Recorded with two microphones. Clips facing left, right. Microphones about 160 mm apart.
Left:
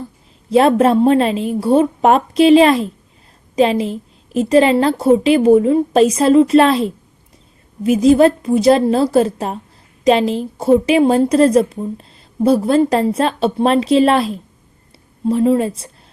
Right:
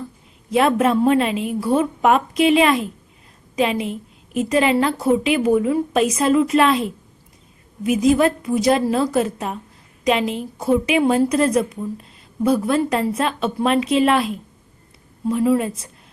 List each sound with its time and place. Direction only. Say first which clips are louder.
0.5 s a woman's voice: left 5 dB; 30° left (ahead or behind)